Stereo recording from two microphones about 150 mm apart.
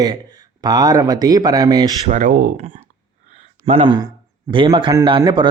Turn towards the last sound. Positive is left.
turn(degrees=-30)  # may be behind; listen again after turning